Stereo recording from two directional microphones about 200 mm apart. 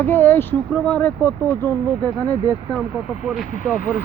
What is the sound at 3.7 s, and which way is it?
Speech, 45° left (ahead or behind).